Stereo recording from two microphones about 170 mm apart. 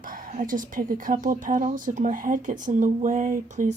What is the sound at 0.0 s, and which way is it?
A woman's voice, 55° right (ahead or behind).